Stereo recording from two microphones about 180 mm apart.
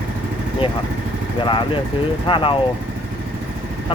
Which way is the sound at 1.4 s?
25° left (ahead or behind).